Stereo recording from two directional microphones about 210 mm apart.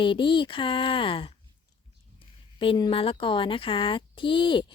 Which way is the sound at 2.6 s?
25° left (ahead or behind).